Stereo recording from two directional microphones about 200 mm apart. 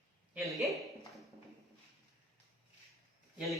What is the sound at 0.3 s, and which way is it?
Speech, centre (ahead or behind).